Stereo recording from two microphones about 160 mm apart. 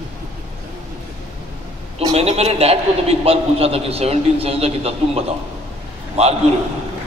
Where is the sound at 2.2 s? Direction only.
40° right (ahead or behind).